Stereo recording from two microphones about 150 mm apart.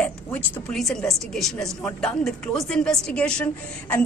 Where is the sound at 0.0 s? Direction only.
5° left (ahead or behind).